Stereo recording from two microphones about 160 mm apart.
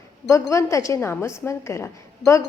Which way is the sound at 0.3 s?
20° left (ahead or behind).